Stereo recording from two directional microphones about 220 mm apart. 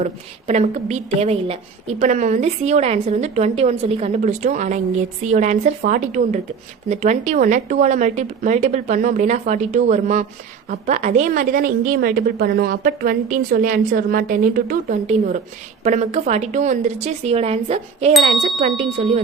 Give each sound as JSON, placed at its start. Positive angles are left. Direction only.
{"t": 0.0, "sound": "a woman's voice", "side_deg": -30}